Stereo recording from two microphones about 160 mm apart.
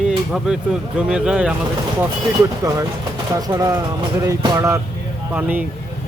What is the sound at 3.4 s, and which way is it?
Speech, 20° right (ahead or behind).